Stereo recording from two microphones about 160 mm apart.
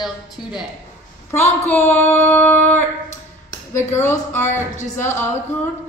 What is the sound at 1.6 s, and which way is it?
A woman's voice, 10° left (ahead or behind).